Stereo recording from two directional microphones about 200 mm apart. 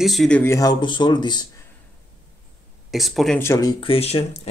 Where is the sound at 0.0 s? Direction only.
Centre (ahead or behind); by 1.7 s 20° left (ahead or behind).